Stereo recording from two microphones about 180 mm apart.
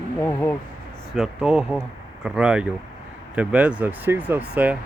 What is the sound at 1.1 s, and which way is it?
Speech, 5° right (ahead or behind).